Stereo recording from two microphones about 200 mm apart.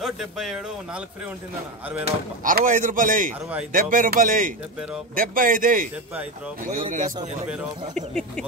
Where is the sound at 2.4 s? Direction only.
40° right (ahead or behind).